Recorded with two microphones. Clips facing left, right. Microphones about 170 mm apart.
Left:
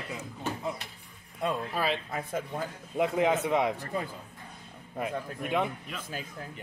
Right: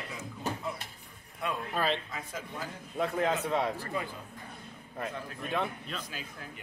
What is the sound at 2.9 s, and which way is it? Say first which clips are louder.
Speech: left 4 dB; 15° left (ahead or behind).